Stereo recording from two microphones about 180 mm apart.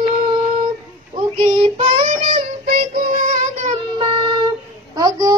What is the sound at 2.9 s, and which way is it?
Child singing, 50° right (ahead or behind).